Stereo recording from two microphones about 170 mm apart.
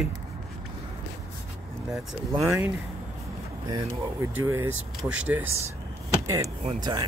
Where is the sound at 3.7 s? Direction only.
15° right (ahead or behind).